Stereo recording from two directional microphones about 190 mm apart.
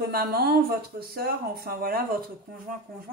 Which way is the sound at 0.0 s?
55° right (ahead or behind).